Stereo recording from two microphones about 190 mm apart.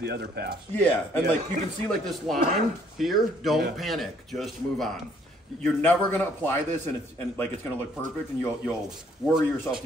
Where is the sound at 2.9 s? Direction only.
Centre (ahead or behind).